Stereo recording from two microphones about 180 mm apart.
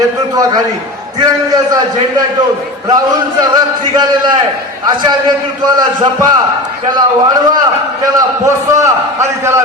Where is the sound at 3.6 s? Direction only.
25° right (ahead or behind).